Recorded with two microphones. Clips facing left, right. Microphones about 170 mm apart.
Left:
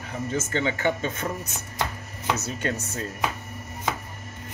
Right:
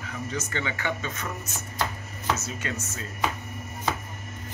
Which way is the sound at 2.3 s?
60° left (ahead or behind).